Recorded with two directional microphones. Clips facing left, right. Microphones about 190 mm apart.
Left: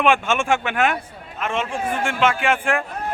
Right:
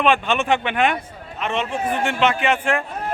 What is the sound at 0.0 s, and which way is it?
A man's voice, 10° left (ahead or behind).